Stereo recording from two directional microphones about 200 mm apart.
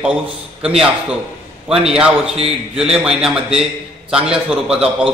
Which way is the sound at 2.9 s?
5° right (ahead or behind).